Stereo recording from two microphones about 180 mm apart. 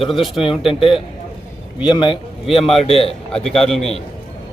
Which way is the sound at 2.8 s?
35° left (ahead or behind).